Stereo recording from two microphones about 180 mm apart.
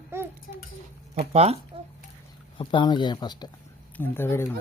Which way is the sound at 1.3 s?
35° right (ahead or behind).